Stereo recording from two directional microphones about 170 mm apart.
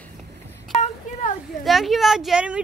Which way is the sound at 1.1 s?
45° left (ahead or behind).